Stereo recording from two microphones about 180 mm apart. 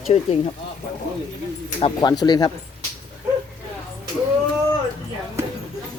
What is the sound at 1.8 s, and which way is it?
Speech, 30° left (ahead or behind).